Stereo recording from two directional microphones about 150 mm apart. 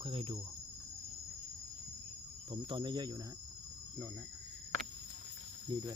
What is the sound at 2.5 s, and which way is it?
Speech, 35° right (ahead or behind).